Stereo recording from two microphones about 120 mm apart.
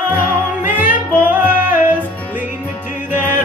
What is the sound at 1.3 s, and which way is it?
Music, 15° right (ahead or behind).